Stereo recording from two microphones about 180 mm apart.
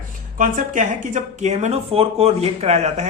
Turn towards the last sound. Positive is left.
turn(degrees=-40)  # may be behind; listen again after turning